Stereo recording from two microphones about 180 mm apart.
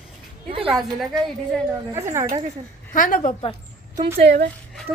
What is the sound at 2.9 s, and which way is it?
Speech, 50° left (ahead or behind).